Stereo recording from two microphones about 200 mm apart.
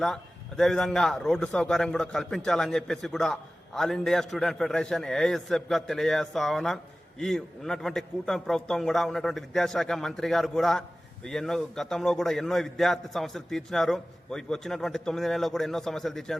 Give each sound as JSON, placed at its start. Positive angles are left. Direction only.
{"t": 0.0, "sound": "a man's voice", "side_deg": 0}